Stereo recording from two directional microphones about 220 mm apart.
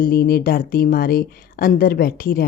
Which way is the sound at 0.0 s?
45° left (ahead or behind).